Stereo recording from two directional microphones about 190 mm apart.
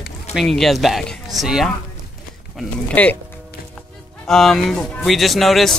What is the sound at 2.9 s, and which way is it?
Speech, 10° left (ahead or behind).